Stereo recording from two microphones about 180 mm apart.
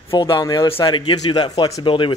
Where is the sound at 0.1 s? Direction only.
20° left (ahead or behind).